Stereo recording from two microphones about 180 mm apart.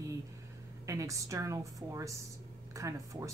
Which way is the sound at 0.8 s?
15° right (ahead or behind).